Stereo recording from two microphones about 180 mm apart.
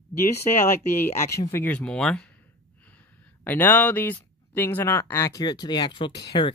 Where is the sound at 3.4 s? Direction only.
10° left (ahead or behind).